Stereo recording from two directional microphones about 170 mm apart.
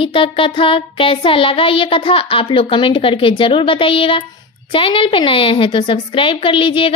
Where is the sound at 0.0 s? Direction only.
30° left (ahead or behind).